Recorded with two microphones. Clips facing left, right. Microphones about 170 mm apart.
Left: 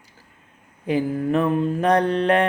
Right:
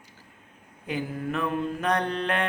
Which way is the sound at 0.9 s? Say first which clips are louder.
Left 9 dB; 35° left (ahead or behind).